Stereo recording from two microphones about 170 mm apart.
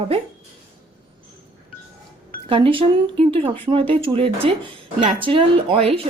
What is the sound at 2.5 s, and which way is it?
Speech, 30° right (ahead or behind).